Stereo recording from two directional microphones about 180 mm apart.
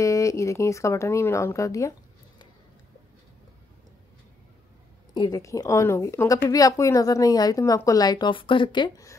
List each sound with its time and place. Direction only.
0.0 s speech: 15° left (ahead or behind)
5.1 s a woman's voice: 20° left (ahead or behind)